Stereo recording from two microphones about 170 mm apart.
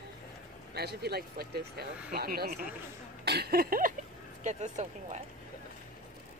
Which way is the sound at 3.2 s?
70° right (ahead or behind).